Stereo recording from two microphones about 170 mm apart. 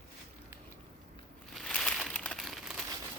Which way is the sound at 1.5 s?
5° left (ahead or behind).